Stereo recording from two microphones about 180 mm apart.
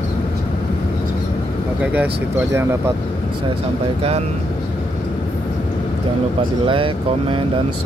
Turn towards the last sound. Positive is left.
turn(degrees=-30)  # may be behind; listen again after turning